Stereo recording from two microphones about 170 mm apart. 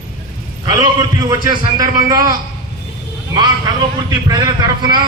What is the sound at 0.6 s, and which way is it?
A man's voice, 20° right (ahead or behind).